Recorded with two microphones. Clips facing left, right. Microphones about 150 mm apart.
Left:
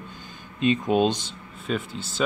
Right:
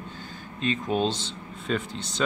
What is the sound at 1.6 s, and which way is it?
Speech, 5° left (ahead or behind).